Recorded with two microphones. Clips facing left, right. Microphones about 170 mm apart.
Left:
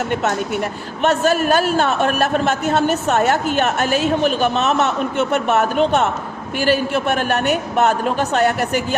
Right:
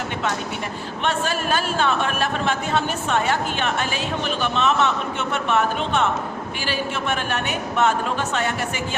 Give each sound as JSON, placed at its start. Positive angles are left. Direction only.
{"t": 0.1, "sound": "a man's voice", "side_deg": 45}